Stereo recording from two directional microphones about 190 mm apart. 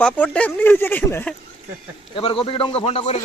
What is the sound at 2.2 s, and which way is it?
Speech, 30° left (ahead or behind).